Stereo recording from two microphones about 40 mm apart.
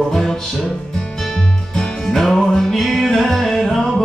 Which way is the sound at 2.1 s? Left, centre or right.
Centre.